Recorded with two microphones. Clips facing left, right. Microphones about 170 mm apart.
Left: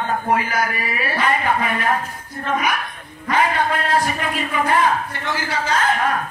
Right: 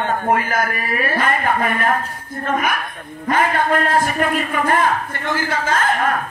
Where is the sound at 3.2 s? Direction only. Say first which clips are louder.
Right 1 dB; 50° right (ahead or behind).